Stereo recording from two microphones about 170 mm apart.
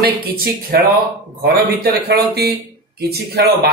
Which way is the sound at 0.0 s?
65° right (ahead or behind).